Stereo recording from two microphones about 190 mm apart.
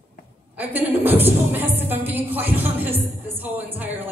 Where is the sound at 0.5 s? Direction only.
10° right (ahead or behind).